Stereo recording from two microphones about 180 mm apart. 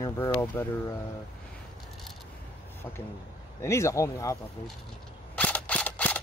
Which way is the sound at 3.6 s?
15° left (ahead or behind).